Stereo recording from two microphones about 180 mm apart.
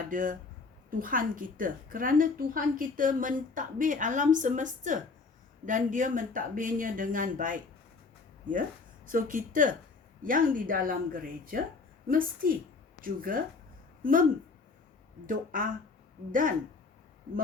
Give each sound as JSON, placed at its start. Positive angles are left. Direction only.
{"t": 0.1, "sound": "a woman's voice", "side_deg": -50}
{"t": 9.0, "sound": "a woman's voice", "side_deg": -50}
{"t": 15.3, "sound": "a woman's voice", "side_deg": -50}